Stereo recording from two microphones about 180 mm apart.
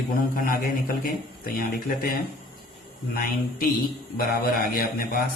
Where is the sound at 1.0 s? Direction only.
55° left (ahead or behind).